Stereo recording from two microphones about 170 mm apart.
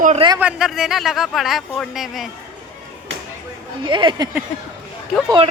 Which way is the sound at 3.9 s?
30° right (ahead or behind).